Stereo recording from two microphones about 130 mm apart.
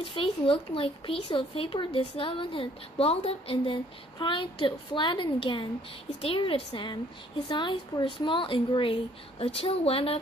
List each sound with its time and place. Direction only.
0.0 s a woman's voice: 45° left (ahead or behind)